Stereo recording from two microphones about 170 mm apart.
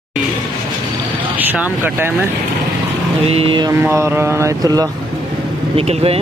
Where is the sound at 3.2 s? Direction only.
35° right (ahead or behind).